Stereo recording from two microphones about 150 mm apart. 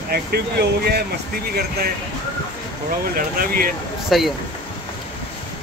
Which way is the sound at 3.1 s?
75° right (ahead or behind).